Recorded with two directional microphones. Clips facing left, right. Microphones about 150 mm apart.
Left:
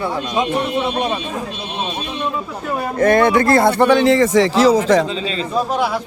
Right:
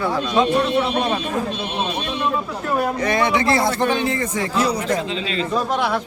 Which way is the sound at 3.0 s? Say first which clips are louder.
Left 6 dB; 50° left (ahead or behind).